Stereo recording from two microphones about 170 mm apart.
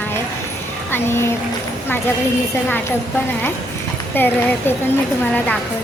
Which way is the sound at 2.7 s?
10° left (ahead or behind).